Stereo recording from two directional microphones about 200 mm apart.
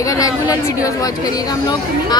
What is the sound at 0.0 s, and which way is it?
Speech, 15° left (ahead or behind).